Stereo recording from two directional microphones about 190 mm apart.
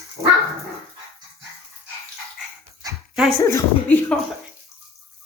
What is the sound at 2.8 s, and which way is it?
Dog, 20° right (ahead or behind).